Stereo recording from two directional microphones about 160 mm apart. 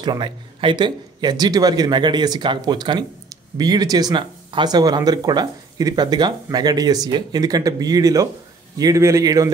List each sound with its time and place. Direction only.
0.0 s speech: 30° right (ahead or behind)